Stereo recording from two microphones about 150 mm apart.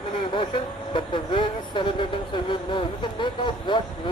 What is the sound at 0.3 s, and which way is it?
Speech, 35° left (ahead or behind).